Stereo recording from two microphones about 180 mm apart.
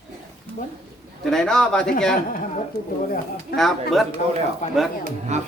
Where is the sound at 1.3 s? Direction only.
5° left (ahead or behind).